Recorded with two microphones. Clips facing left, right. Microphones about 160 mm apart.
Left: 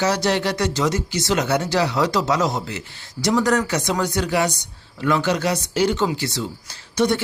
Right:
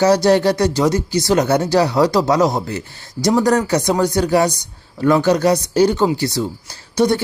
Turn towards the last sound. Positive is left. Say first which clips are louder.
# right 4 dB
turn(degrees=-35)  # may be behind; listen again after turning